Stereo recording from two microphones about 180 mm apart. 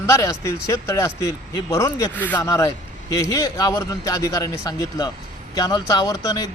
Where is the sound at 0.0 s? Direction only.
15° left (ahead or behind).